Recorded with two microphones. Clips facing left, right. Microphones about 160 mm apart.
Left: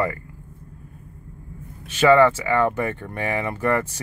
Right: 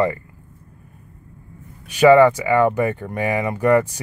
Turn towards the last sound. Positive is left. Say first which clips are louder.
# right 6 dB
turn(degrees=-15)  # may be behind; listen again after turning